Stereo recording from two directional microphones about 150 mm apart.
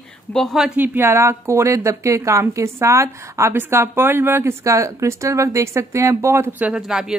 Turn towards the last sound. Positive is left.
turn(degrees=-5)  # may be behind; listen again after turning